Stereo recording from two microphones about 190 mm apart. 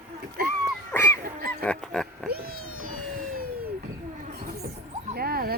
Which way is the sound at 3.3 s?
50° right (ahead or behind).